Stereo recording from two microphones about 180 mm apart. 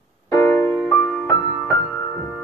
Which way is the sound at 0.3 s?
15° left (ahead or behind).